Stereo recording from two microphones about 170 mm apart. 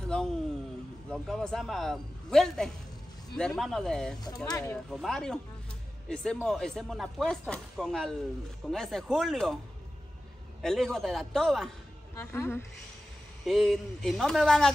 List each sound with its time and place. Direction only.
0.0 s a sound: 5° left (ahead or behind)
1.1 s speech: centre (ahead or behind)
4.5 s speech: 20° left (ahead or behind)
4.9 s speech: centre (ahead or behind)
10.6 s speech: centre (ahead or behind)
12.2 s a woman's voice: 15° left (ahead or behind)
13.5 s speech: centre (ahead or behind)